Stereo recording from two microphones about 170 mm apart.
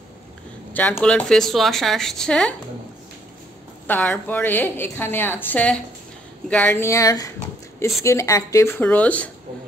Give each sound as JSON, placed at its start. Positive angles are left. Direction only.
{"t": 0.7, "sound": "speech", "side_deg": 10}
{"t": 3.8, "sound": "a woman's voice", "side_deg": 10}